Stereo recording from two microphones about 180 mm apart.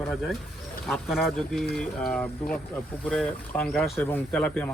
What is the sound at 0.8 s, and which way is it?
Speech, centre (ahead or behind).